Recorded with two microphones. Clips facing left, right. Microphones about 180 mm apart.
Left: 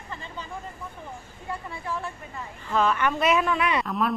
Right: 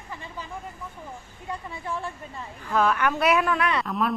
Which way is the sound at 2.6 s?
5° right (ahead or behind).